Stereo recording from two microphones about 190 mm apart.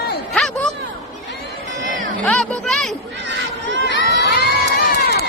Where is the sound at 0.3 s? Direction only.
5° left (ahead or behind).